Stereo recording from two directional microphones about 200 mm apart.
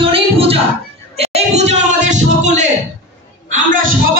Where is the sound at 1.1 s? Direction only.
30° right (ahead or behind).